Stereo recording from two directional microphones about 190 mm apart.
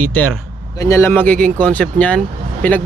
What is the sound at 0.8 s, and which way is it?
Speech, 15° left (ahead or behind).